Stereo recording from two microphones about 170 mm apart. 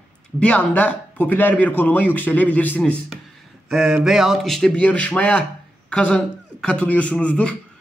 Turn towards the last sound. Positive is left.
turn(degrees=5)  # may be behind; listen again after turning